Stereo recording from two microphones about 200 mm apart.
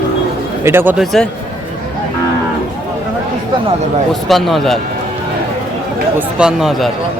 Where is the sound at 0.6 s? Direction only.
10° right (ahead or behind).